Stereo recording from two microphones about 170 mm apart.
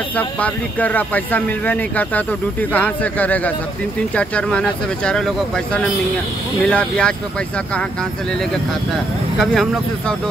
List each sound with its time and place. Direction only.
0.1 s speech: 10° left (ahead or behind)